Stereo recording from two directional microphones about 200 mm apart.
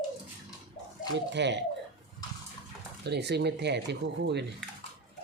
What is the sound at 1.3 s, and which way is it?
Speech, 60° right (ahead or behind).